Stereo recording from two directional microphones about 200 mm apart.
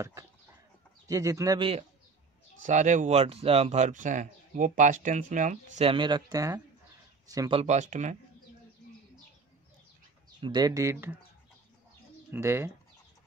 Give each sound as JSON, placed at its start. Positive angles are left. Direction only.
{"t": 1.0, "sound": "a man's voice", "side_deg": -15}
{"t": 2.6, "sound": "speech", "side_deg": -40}
{"t": 7.6, "sound": "speech", "side_deg": -35}
{"t": 10.4, "sound": "a man's voice", "side_deg": -20}
{"t": 12.3, "sound": "a man's voice", "side_deg": -15}